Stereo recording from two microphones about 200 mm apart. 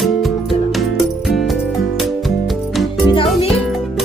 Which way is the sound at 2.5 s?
Centre (ahead or behind).